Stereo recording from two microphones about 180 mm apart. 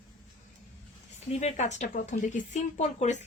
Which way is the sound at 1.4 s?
40° left (ahead or behind).